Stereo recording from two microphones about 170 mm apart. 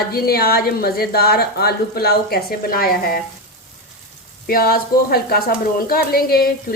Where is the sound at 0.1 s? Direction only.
65° left (ahead or behind).